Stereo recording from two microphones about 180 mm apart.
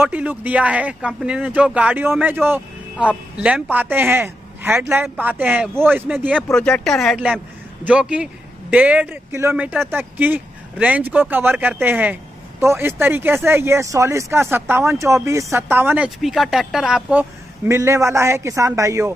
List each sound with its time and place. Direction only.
0.0 s speech: 10° right (ahead or behind)
6.3 s speech: 5° left (ahead or behind); by 19.1 s 15° right (ahead or behind)